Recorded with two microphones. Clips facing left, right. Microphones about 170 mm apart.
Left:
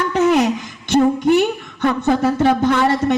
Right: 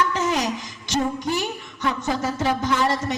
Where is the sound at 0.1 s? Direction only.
60° left (ahead or behind).